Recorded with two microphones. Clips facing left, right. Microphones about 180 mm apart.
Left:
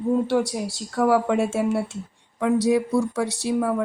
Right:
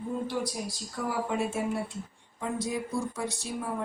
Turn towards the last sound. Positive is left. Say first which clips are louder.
# left 11 dB
turn(degrees=80)